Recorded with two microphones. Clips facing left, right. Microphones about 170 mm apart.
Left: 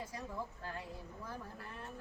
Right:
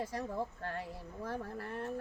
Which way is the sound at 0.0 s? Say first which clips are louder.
Right 6 dB; 70° right (ahead or behind).